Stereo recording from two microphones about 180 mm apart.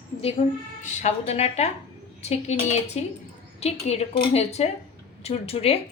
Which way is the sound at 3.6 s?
35° left (ahead or behind).